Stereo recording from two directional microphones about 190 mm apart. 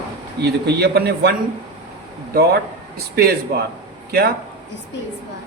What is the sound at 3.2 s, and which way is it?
Speech, 55° right (ahead or behind).